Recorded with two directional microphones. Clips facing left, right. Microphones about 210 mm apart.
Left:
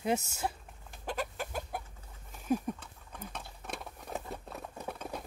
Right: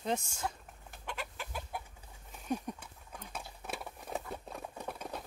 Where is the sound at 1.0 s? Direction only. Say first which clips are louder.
Left 7 dB; 40° left (ahead or behind).